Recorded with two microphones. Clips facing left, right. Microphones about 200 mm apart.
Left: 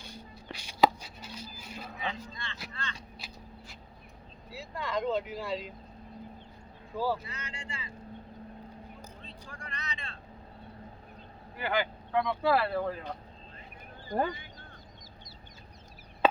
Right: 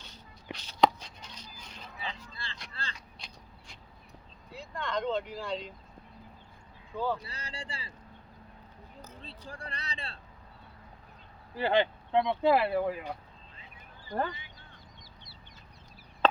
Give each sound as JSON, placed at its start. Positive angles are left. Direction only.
{"t": 0.5, "sound": "a sound", "side_deg": 10}
{"t": 2.3, "sound": "speech", "side_deg": -35}
{"t": 2.8, "sound": "vehicle", "side_deg": -35}
{"t": 3.2, "sound": "a sound", "side_deg": 5}
{"t": 4.5, "sound": "speech", "side_deg": 5}
{"t": 6.9, "sound": "speech", "side_deg": 5}
{"t": 7.2, "sound": "speech", "side_deg": -35}
{"t": 9.5, "sound": "speech", "side_deg": -35}
{"t": 11.5, "sound": "speech", "side_deg": -30}
{"t": 14.3, "sound": "speech", "side_deg": 45}
{"t": 16.2, "sound": "chop", "side_deg": 10}